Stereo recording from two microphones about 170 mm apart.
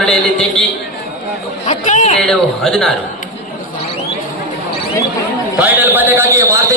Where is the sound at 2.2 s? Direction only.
5° left (ahead or behind).